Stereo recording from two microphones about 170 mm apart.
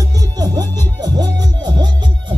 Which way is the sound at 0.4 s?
25° right (ahead or behind).